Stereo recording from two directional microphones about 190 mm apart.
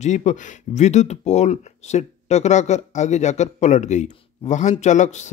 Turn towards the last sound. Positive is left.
turn(degrees=40)  # may be behind; listen again after turning